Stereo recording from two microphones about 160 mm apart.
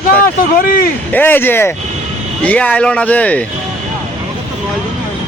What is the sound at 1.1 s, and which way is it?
Speech, 10° left (ahead or behind).